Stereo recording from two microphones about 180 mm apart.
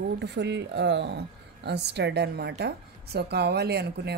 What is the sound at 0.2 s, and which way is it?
A woman's voice, 75° right (ahead or behind).